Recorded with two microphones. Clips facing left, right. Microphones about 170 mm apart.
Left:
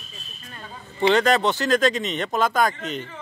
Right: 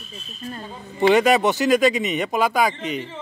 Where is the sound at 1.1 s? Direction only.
15° right (ahead or behind).